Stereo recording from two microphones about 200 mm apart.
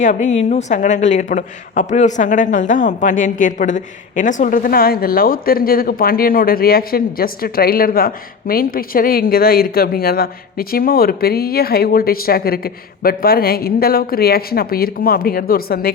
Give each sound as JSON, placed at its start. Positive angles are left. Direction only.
{"t": 0.0, "sound": "speech", "side_deg": 35}